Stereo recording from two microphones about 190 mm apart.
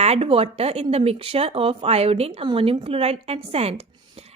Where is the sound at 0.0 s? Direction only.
30° right (ahead or behind).